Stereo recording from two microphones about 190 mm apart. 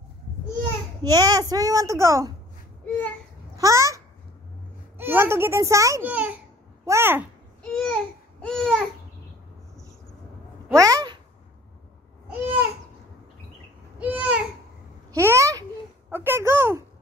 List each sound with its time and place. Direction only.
1.0 s a child's voice: 20° right (ahead or behind)
3.6 s speech: 15° right (ahead or behind)
7.6 s a sound: 5° left (ahead or behind)
10.7 s speech: 15° right (ahead or behind)
12.3 s babbling: 10° right (ahead or behind)
13.9 s babbling: 10° right (ahead or behind)
16.1 s a sound: 10° right (ahead or behind)